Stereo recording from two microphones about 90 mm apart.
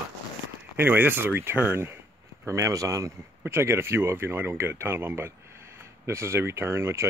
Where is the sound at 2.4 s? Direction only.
35° right (ahead or behind).